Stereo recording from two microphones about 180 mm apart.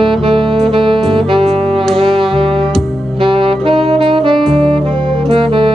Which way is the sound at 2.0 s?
30° right (ahead or behind).